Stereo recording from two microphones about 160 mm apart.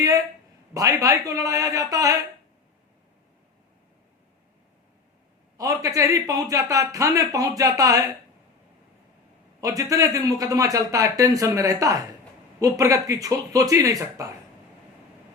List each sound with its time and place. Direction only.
0.7 s speech: 20° right (ahead or behind)
5.5 s speech: 20° right (ahead or behind)
9.6 s speech: 20° right (ahead or behind)